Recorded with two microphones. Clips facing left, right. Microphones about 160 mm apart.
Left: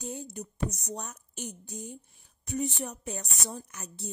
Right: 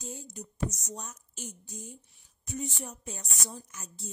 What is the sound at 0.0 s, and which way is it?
A woman's voice, 60° left (ahead or behind).